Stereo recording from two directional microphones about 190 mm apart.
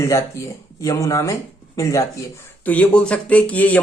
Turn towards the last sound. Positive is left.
turn(degrees=10)  # may be behind; listen again after turning